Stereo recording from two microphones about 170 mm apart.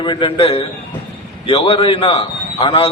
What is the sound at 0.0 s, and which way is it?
A man's voice, 30° left (ahead or behind).